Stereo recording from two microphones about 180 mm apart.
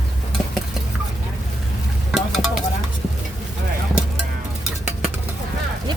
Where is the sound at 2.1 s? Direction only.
Centre (ahead or behind).